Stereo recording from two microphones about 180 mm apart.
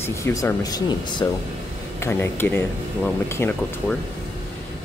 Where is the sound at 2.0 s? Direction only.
15° left (ahead or behind).